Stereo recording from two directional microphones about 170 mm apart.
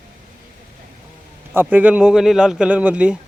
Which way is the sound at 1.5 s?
10° right (ahead or behind).